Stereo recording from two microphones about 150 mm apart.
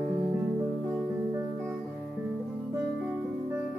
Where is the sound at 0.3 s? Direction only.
20° right (ahead or behind).